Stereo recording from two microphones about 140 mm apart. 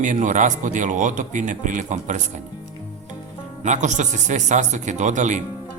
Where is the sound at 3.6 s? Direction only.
60° right (ahead or behind).